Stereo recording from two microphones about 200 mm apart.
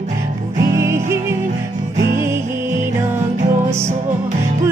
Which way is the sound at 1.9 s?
45° right (ahead or behind).